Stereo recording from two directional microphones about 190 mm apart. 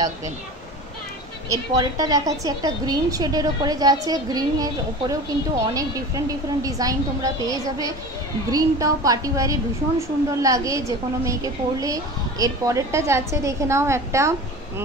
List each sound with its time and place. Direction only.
1.5 s a woman's voice: 20° right (ahead or behind)